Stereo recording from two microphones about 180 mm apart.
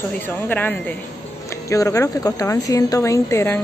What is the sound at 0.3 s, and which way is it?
Speech, 10° left (ahead or behind).